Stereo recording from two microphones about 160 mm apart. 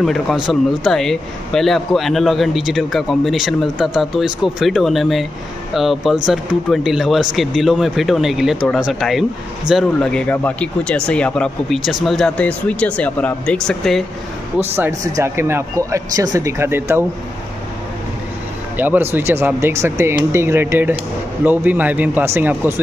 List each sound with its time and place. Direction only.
0.0 s a man's voice: centre (ahead or behind)
14.6 s speech: 15° right (ahead or behind)
18.8 s speech: 10° right (ahead or behind)